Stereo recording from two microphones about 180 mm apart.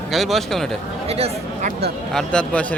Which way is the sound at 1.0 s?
35° right (ahead or behind).